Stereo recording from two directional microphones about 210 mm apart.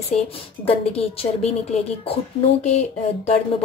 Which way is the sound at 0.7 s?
30° left (ahead or behind).